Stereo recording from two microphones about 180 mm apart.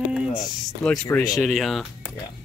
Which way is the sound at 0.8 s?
10° left (ahead or behind).